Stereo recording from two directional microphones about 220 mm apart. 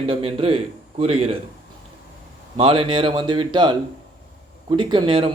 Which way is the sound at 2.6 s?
25° right (ahead or behind).